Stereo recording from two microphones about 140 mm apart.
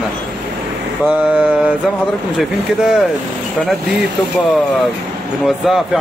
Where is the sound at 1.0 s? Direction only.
10° right (ahead or behind).